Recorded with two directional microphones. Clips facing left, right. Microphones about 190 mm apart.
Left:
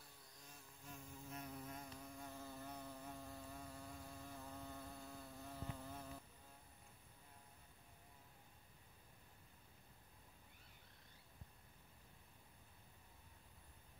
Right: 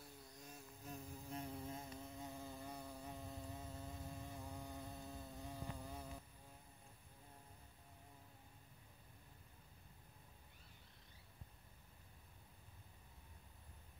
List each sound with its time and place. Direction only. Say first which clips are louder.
0.5 s insect: right 5 dB; 40° right (ahead or behind); by 6.2 s 15° right (ahead or behind)